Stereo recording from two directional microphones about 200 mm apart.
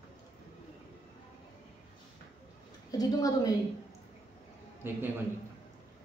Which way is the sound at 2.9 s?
20° left (ahead or behind).